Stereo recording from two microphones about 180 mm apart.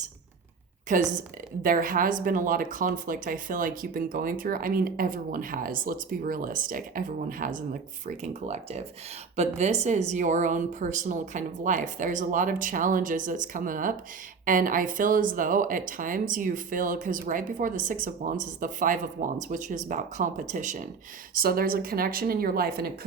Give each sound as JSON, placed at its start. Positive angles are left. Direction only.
{"t": 0.9, "sound": "speech", "side_deg": -45}
{"t": 21.3, "sound": "a woman's voice", "side_deg": -55}